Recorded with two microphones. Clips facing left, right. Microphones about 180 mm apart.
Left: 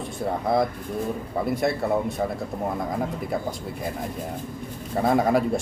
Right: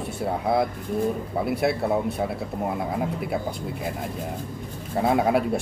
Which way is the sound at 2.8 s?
5° right (ahead or behind).